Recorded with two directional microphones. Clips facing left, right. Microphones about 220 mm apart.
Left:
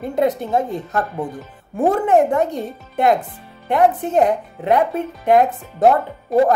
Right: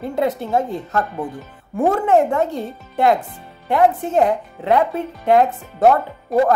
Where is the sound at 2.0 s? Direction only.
15° left (ahead or behind).